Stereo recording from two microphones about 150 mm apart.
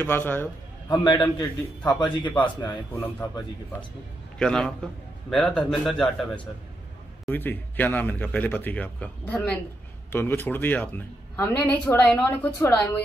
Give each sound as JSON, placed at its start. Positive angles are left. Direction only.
{"t": 0.0, "sound": "a woman's voice", "side_deg": 15}
{"t": 0.8, "sound": "a man's voice", "side_deg": 30}
{"t": 4.4, "sound": "a man's voice", "side_deg": 5}